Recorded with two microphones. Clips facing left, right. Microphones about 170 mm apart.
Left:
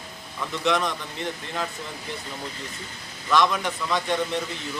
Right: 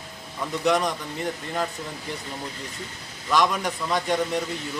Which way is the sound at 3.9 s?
10° right (ahead or behind).